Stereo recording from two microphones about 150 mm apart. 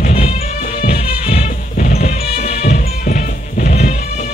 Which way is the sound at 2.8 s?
65° left (ahead or behind).